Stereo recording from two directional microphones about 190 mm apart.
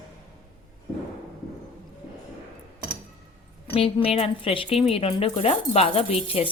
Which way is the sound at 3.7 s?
30° left (ahead or behind).